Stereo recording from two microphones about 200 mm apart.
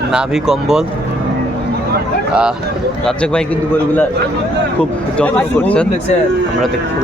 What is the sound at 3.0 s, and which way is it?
A man's voice, 5° left (ahead or behind).